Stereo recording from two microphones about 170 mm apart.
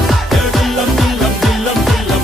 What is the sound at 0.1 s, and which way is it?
Music, centre (ahead or behind).